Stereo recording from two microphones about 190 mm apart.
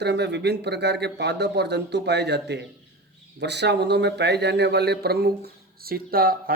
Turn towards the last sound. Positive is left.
turn(degrees=-50)  # may be behind; listen again after turning